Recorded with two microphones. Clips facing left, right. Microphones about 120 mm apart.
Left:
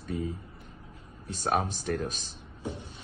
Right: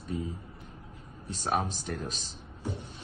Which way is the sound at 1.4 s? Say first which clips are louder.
Left 2 dB; 60° left (ahead or behind).